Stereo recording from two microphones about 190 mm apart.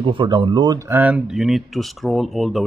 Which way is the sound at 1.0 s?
5° right (ahead or behind).